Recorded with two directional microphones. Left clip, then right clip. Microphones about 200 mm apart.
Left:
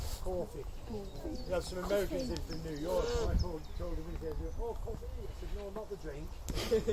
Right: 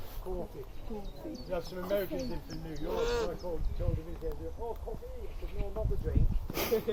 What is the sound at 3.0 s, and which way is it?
Speech, 15° right (ahead or behind).